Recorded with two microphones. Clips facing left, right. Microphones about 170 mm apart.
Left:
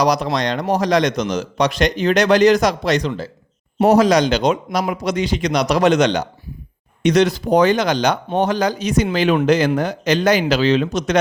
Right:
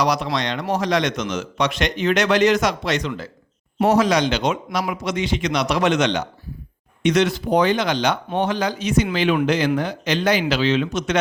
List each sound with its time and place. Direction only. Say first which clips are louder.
0.0 s a man's voice: left 4 dB; 40° left (ahead or behind)